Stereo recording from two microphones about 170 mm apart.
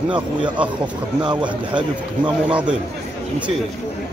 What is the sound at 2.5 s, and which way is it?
Speech, 5° right (ahead or behind).